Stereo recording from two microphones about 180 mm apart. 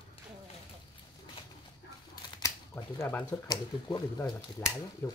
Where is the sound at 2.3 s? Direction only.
15° left (ahead or behind).